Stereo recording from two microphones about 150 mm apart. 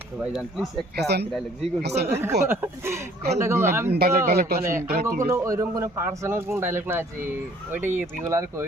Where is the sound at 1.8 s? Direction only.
90° right.